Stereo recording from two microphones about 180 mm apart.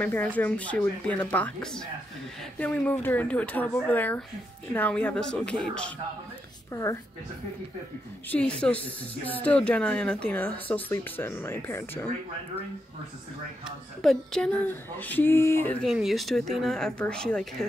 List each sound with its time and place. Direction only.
0.0 s speech: 10° left (ahead or behind)
6.7 s speech: 15° left (ahead or behind)
8.3 s speech: 5° left (ahead or behind)
14.0 s speech: 5° left (ahead or behind)